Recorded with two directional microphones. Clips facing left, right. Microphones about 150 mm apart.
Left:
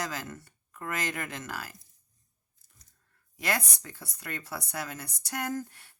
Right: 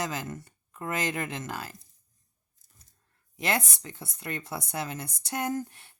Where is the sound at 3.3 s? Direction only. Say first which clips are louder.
Right 3 dB; 25° right (ahead or behind).